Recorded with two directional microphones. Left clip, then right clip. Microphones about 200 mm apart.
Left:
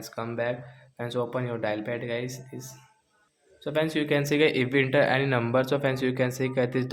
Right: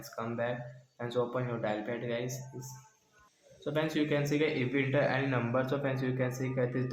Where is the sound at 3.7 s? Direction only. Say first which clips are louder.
Left 5 dB; 35° left (ahead or behind).